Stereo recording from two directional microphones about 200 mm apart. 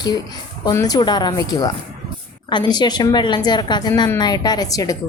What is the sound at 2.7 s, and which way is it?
A woman's voice, 20° left (ahead or behind).